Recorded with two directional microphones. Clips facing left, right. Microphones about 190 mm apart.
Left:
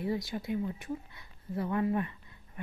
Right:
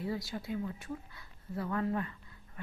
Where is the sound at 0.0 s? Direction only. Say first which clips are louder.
Left 4 dB; 20° left (ahead or behind).